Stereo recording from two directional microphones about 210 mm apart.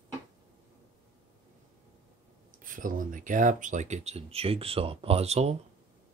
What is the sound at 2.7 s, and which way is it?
Speech, 40° right (ahead or behind).